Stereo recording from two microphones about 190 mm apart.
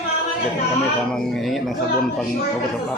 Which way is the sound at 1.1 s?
Centre (ahead or behind).